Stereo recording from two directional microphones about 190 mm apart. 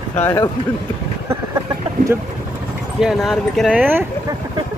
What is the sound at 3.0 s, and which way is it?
Speech, centre (ahead or behind).